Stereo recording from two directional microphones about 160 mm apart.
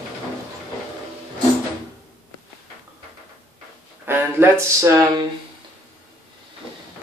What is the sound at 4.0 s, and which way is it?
Speech, 15° right (ahead or behind).